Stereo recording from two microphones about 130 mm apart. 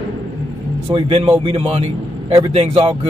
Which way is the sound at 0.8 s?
40° right (ahead or behind).